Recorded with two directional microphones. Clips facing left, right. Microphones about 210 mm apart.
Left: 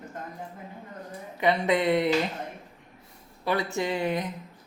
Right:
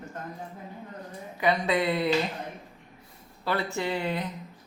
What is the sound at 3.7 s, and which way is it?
Speech, 15° left (ahead or behind).